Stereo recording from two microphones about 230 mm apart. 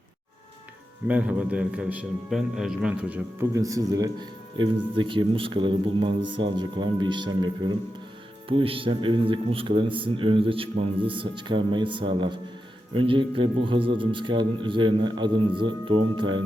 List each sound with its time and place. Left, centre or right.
1.0 s a man's voice: centre